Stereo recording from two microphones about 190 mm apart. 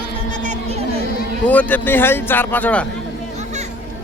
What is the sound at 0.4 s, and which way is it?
Music, 40° right (ahead or behind).